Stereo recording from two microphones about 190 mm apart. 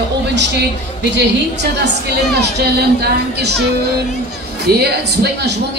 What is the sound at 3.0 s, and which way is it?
Speech, 60° right (ahead or behind).